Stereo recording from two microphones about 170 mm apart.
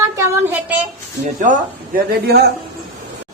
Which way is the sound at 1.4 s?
50° right (ahead or behind).